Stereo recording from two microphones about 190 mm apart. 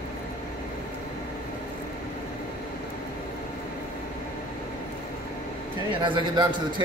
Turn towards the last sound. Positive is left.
turn(degrees=-25)  # may be behind; listen again after turning